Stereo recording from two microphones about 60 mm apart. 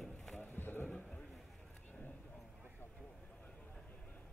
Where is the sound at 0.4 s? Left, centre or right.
Left.